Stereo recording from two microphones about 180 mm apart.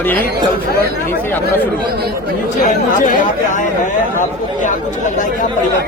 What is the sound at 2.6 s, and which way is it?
Speech, 45° left (ahead or behind).